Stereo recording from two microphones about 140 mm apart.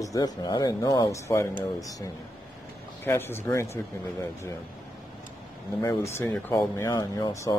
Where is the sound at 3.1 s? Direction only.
15° left (ahead or behind).